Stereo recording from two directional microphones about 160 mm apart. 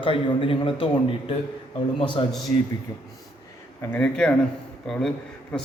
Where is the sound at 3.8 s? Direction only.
10° left (ahead or behind).